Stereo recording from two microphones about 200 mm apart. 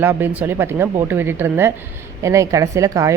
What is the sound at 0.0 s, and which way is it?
A woman's voice, 10° right (ahead or behind).